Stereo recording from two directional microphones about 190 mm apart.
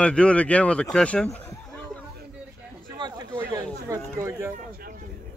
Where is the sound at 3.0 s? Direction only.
20° right (ahead or behind).